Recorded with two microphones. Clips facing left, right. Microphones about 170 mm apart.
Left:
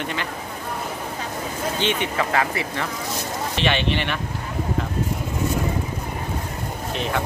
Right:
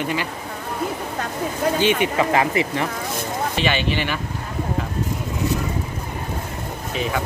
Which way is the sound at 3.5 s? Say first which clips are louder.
Left 1 dB; 5° right (ahead or behind).